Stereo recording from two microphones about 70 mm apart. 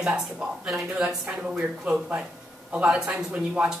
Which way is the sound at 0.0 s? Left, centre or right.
Centre.